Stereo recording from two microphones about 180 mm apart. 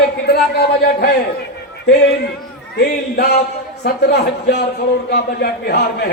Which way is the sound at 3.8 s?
65° left (ahead or behind).